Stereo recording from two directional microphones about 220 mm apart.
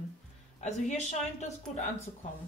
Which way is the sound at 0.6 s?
30° left (ahead or behind).